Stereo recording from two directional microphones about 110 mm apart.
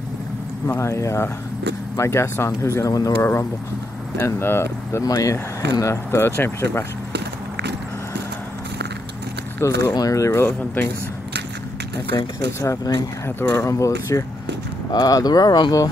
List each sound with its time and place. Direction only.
0.7 s speech: 25° left (ahead or behind)
9.6 s speech: 25° left (ahead or behind)
12.4 s speech: 30° left (ahead or behind)
13.4 s speech: 20° left (ahead or behind); by 15.9 s 35° left (ahead or behind)